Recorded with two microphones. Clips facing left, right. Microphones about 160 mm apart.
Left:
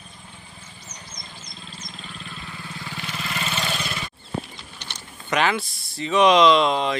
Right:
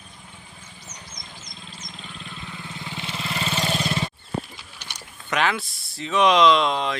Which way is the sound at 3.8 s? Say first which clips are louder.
Right 6 dB; 30° right (ahead or behind).